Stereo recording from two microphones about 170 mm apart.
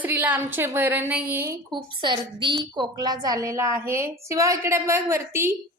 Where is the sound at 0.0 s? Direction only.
10° right (ahead or behind).